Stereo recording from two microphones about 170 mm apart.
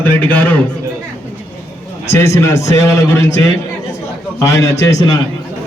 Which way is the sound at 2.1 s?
15° left (ahead or behind).